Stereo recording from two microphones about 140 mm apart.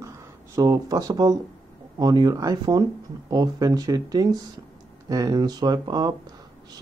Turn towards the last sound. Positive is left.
turn(degrees=-30)  # may be behind; listen again after turning